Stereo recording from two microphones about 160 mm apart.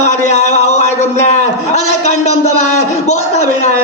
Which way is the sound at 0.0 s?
45° left (ahead or behind).